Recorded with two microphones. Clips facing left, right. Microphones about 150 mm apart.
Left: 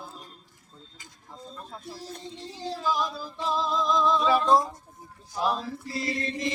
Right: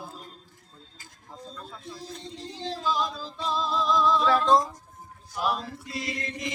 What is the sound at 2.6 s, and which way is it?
Music, 10° left (ahead or behind).